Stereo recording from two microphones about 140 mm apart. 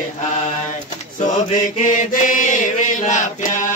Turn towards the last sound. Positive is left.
turn(degrees=60)  # may be behind; listen again after turning